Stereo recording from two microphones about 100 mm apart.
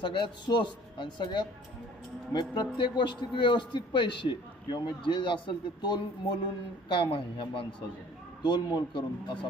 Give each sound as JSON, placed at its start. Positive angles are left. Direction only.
{"t": 0.0, "sound": "a man's voice", "side_deg": 50}